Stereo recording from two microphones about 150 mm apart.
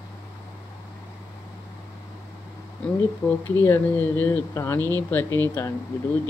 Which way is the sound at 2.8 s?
5° left (ahead or behind).